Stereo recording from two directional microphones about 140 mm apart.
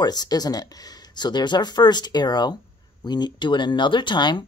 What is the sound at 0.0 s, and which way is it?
Speech, 30° left (ahead or behind).